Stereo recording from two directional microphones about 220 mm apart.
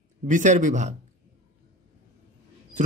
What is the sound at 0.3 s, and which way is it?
Speech, 35° right (ahead or behind).